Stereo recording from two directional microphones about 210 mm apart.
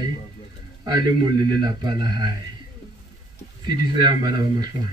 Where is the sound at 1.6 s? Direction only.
20° right (ahead or behind).